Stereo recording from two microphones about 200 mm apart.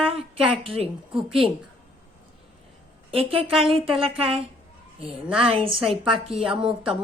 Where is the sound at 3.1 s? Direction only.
30° right (ahead or behind).